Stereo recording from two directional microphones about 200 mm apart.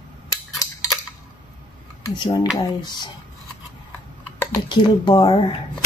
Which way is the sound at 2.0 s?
25° left (ahead or behind).